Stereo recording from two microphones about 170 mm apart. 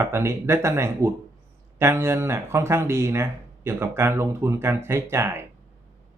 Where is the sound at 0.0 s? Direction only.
15° right (ahead or behind).